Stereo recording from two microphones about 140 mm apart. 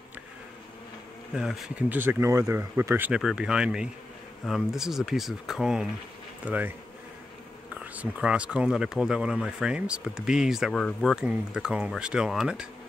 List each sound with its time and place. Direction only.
1.3 s speech: centre (ahead or behind)
1.9 s speech: 15° right (ahead or behind)
3.1 s speech: 5° right (ahead or behind)
7.7 s speech: 10° right (ahead or behind)